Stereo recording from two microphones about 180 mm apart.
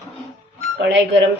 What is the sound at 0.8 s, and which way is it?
Speech, 80° right.